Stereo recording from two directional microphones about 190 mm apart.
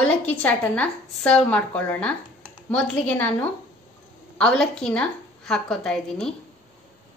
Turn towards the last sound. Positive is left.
turn(degrees=5)  # may be behind; listen again after turning